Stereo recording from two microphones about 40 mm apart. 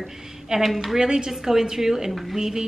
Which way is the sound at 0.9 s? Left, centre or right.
Centre.